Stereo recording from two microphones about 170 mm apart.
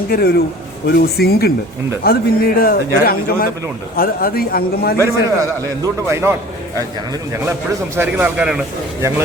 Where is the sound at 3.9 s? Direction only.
60° left (ahead or behind).